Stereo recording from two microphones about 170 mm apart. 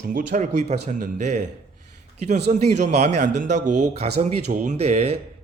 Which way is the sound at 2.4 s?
40° right (ahead or behind).